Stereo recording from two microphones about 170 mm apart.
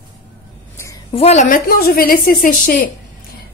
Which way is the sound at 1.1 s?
40° left (ahead or behind).